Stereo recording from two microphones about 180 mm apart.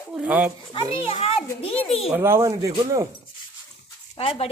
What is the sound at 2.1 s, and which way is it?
Speech, 15° right (ahead or behind).